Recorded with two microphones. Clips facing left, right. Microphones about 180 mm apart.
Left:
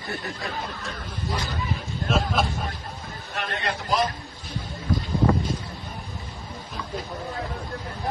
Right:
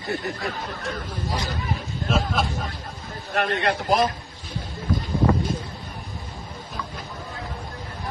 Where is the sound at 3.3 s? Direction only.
60° right (ahead or behind).